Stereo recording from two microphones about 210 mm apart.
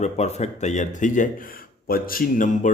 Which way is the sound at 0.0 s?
30° left (ahead or behind).